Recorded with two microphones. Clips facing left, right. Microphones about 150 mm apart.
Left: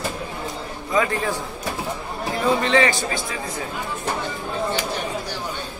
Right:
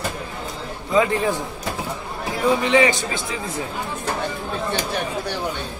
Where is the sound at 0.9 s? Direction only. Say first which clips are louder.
Right 3 dB; 20° right (ahead or behind).